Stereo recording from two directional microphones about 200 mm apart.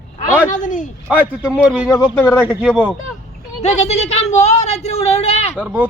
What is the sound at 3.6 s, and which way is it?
Speech, 35° left (ahead or behind).